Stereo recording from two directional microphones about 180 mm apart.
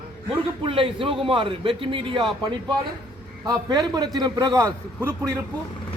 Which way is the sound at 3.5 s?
20° right (ahead or behind).